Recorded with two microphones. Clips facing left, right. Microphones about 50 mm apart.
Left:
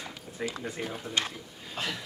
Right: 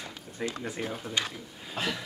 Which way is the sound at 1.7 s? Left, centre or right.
Centre.